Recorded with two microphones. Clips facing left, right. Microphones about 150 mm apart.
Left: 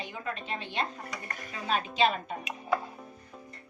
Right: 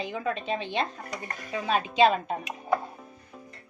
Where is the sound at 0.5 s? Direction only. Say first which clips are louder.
Right 3 dB; 90° right.